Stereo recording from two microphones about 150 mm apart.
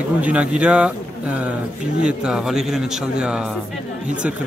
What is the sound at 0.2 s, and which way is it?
A man's voice, 10° right (ahead or behind).